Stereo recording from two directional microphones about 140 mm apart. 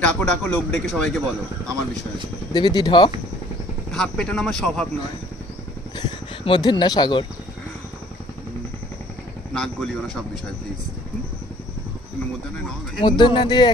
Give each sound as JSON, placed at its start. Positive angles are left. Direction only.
{"t": 0.0, "sound": "speech", "side_deg": 5}
{"t": 2.5, "sound": "speech", "side_deg": 30}
{"t": 3.9, "sound": "speech", "side_deg": 5}
{"t": 5.9, "sound": "speech", "side_deg": 35}
{"t": 9.5, "sound": "speech", "side_deg": 0}
{"t": 13.0, "sound": "speech", "side_deg": 35}